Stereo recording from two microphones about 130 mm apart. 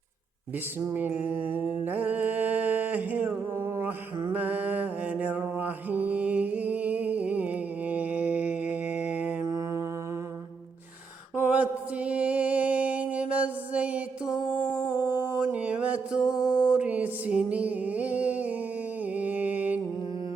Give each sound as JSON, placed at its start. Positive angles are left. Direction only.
{"t": 0.9, "sound": "a sound", "side_deg": -10}
{"t": 4.3, "sound": "mantra", "side_deg": -15}
{"t": 9.5, "sound": "mantra", "side_deg": -25}
{"t": 11.3, "sound": "mantra", "side_deg": -10}
{"t": 14.5, "sound": "a sound", "side_deg": 40}
{"t": 14.8, "sound": "music", "side_deg": -15}
{"t": 19.0, "sound": "mantra", "side_deg": -10}